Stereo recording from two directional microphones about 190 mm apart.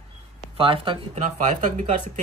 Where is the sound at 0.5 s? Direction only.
30° right (ahead or behind).